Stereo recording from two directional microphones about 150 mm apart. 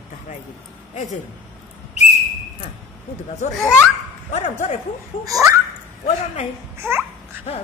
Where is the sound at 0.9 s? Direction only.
50° left (ahead or behind).